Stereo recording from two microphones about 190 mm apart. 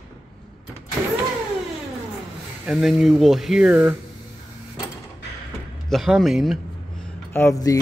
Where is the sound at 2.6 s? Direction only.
Centre (ahead or behind).